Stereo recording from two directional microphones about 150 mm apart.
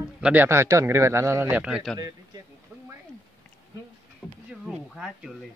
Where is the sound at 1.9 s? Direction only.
25° right (ahead or behind).